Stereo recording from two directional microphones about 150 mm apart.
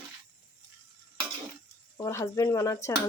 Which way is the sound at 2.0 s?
20° left (ahead or behind).